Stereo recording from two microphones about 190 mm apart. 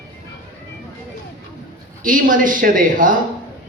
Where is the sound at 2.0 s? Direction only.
45° right (ahead or behind).